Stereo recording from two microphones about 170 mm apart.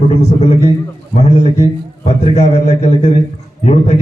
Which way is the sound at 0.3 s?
40° left (ahead or behind).